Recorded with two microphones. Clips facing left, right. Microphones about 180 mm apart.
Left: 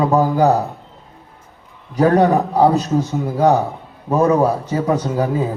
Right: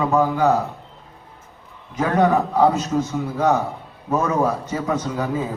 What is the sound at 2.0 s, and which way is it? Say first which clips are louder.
A man's voice: left 4 dB; 35° left (ahead or behind).